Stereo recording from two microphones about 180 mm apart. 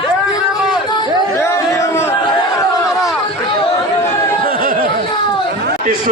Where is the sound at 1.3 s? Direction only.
15° left (ahead or behind).